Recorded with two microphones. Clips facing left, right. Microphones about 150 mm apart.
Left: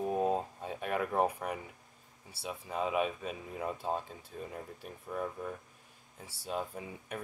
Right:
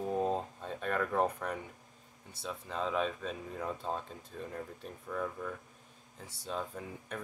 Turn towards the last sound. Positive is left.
turn(degrees=10)  # may be behind; listen again after turning